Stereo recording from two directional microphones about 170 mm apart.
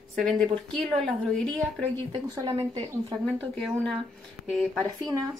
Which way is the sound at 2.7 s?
20° right (ahead or behind).